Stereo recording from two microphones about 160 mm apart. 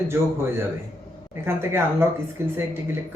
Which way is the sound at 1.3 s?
15° right (ahead or behind).